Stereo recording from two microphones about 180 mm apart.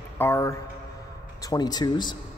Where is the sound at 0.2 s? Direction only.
15° left (ahead or behind).